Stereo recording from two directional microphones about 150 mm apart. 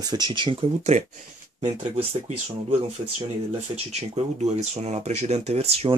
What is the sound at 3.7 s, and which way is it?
Speech, 45° right (ahead or behind).